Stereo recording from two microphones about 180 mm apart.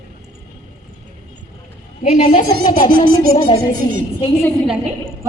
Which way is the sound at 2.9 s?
55° right (ahead or behind).